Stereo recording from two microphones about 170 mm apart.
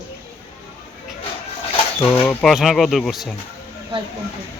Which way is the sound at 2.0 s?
10° left (ahead or behind).